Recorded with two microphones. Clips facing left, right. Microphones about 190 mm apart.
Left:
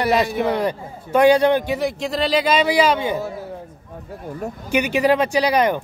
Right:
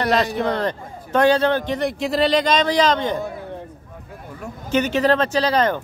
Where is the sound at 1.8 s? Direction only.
Centre (ahead or behind).